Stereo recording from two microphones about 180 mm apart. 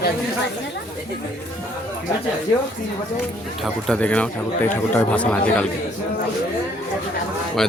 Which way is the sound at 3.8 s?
5° left (ahead or behind).